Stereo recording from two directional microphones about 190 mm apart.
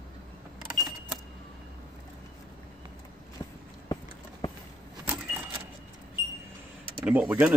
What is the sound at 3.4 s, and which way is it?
Walk, 20° left (ahead or behind).